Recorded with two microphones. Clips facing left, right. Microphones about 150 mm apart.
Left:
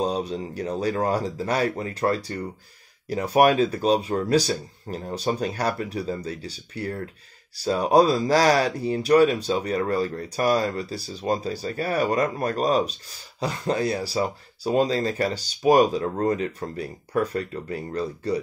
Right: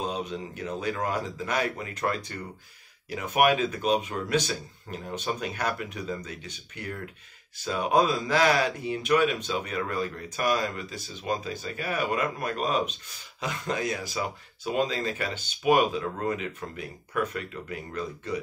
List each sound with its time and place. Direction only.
0.0 s speech: 35° left (ahead or behind)